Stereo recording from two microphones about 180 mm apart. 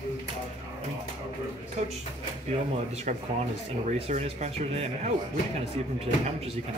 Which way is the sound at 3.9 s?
35° right (ahead or behind).